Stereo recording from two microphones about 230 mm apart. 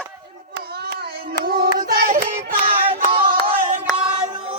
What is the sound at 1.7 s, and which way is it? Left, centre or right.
Child singing, right.